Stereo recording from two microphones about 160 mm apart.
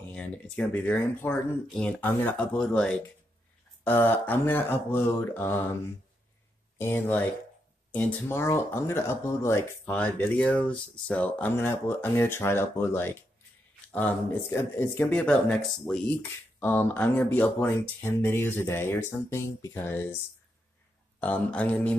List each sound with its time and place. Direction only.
0.1 s speech: 5° left (ahead or behind)
6.8 s speech: 10° left (ahead or behind)
21.2 s speech: 10° left (ahead or behind)